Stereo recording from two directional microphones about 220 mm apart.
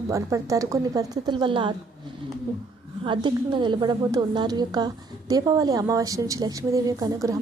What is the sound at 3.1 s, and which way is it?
A woman's voice, 20° right (ahead or behind).